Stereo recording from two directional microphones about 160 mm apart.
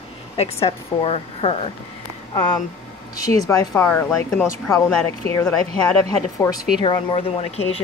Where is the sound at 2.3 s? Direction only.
25° left (ahead or behind).